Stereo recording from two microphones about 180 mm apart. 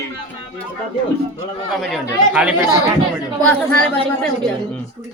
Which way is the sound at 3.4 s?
5° left (ahead or behind).